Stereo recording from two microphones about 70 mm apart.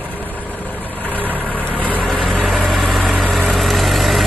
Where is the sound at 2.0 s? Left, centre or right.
Centre.